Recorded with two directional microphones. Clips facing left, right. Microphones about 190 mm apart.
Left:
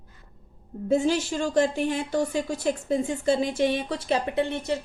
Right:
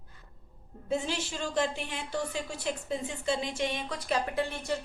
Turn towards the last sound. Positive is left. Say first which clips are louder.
# left 6 dB
turn(degrees=20)  # may be behind; listen again after turning